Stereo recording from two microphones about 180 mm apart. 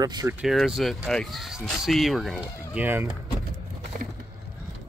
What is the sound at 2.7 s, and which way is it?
Speech, 10° right (ahead or behind).